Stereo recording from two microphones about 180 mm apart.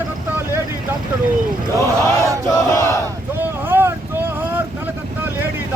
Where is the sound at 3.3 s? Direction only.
10° right (ahead or behind).